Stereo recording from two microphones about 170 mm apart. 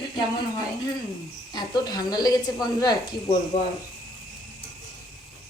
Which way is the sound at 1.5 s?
25° left (ahead or behind).